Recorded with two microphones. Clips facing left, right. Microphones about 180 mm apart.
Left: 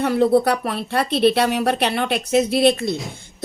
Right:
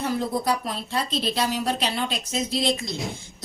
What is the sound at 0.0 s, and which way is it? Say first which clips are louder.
Speech: left 9 dB; 65° left (ahead or behind).